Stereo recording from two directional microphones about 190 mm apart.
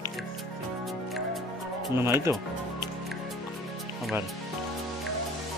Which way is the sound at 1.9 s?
15° right (ahead or behind).